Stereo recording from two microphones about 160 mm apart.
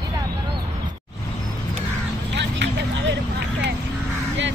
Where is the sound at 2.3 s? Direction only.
90° right.